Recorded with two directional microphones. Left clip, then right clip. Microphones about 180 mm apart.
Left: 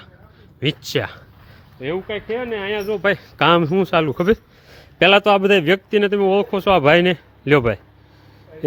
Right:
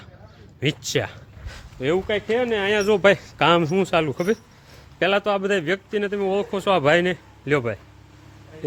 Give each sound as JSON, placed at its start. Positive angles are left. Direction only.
{"t": 0.6, "sound": "speech", "side_deg": 15}
{"t": 1.8, "sound": "speech", "side_deg": -35}
{"t": 3.3, "sound": "speech", "side_deg": 15}